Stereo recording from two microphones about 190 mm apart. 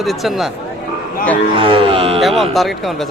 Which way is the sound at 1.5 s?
30° right (ahead or behind).